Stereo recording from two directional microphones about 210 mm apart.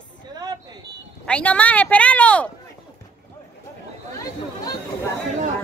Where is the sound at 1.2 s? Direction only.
5° left (ahead or behind).